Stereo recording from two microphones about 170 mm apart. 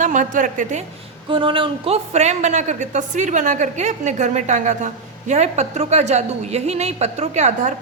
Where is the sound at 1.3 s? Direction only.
30° right (ahead or behind).